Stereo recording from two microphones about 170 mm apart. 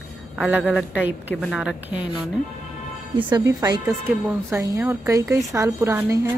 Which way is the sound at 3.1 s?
25° right (ahead or behind).